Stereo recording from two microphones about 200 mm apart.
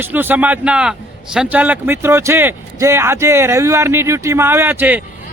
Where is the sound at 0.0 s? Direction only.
10° right (ahead or behind).